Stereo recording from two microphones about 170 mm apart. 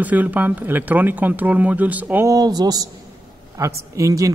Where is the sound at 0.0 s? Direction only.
10° right (ahead or behind).